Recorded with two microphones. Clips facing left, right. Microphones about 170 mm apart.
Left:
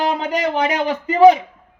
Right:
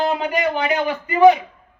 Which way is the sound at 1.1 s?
90° left.